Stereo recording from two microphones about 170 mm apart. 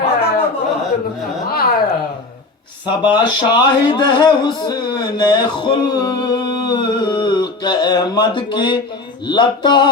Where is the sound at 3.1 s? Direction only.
25° left (ahead or behind).